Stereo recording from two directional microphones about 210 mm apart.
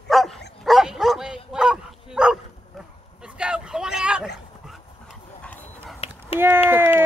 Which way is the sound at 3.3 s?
5° right (ahead or behind).